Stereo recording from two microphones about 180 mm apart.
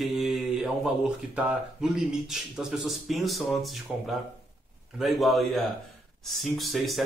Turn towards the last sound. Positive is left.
turn(degrees=0)  # may be behind; listen again after turning